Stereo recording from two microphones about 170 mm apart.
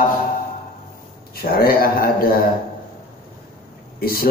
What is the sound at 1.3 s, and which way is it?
A man's voice, 60° left (ahead or behind).